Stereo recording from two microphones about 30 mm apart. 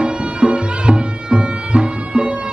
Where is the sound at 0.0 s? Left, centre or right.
Right.